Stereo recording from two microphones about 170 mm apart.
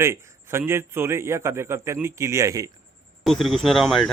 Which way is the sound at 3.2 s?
Centre (ahead or behind).